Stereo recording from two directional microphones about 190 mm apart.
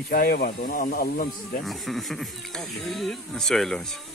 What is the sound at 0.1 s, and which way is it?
Speech, 50° left (ahead or behind).